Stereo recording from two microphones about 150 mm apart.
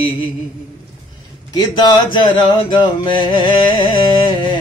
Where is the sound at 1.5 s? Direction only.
30° left (ahead or behind).